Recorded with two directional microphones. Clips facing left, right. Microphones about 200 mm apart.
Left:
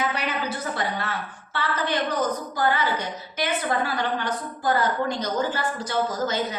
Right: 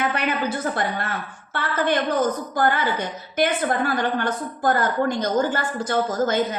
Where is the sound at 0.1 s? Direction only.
55° right (ahead or behind).